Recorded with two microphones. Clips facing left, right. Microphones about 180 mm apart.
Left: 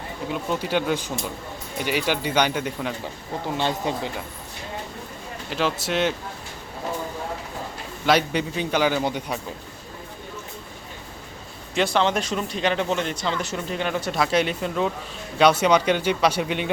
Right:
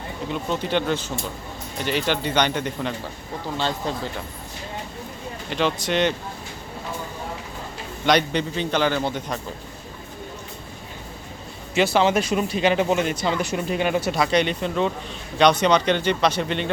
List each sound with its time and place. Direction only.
0.3 s a man's voice: 10° left (ahead or behind)
5.5 s speech: 5° left (ahead or behind)
8.0 s a man's voice: 5° left (ahead or behind)
11.7 s speech: 5° right (ahead or behind)
14.1 s a man's voice: centre (ahead or behind)